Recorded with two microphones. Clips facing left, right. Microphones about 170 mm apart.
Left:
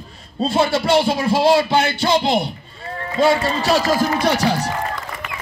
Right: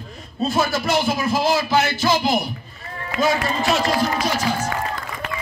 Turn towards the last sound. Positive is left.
turn(degrees=70)  # may be behind; listen again after turning